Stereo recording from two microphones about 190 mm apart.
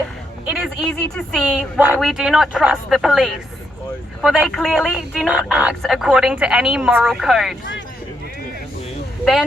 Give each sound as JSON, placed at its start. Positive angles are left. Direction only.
{"t": 0.4, "sound": "a sound", "side_deg": 0}
{"t": 1.1, "sound": "speech", "side_deg": 0}
{"t": 9.2, "sound": "speech", "side_deg": 0}